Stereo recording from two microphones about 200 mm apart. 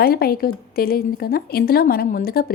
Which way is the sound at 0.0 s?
50° left (ahead or behind).